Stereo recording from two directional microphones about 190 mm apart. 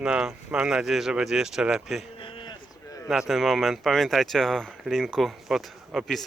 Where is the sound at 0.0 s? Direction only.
5° right (ahead or behind).